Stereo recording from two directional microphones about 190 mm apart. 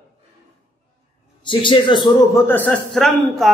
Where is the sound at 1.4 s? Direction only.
25° left (ahead or behind).